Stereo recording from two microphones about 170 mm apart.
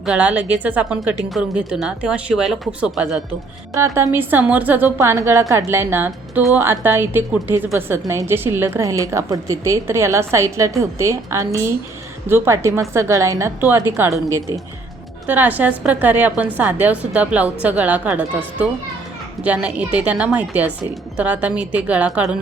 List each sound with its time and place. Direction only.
0.0 s a woman's voice: 5° right (ahead or behind)
3.8 s a woman's voice: 15° right (ahead or behind)